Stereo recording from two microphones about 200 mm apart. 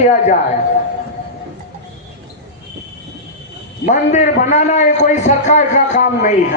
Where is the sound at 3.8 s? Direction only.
40° left (ahead or behind).